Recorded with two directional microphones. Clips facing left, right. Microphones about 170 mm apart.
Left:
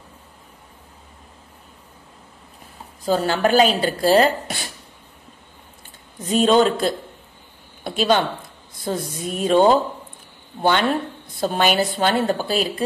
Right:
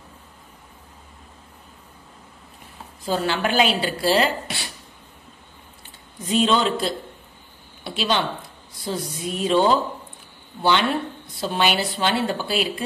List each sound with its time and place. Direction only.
3.1 s a woman's voice: 40° left (ahead or behind)
6.2 s a woman's voice: 45° left (ahead or behind)